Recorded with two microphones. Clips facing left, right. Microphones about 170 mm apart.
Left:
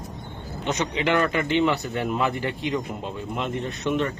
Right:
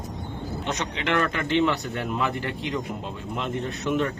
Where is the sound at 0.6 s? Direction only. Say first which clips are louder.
Left 5 dB; 5° left (ahead or behind).